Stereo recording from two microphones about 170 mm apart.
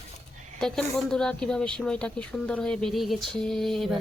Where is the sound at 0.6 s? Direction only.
5° left (ahead or behind).